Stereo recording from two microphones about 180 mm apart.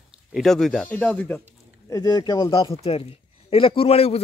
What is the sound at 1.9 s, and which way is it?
Speech, 20° left (ahead or behind).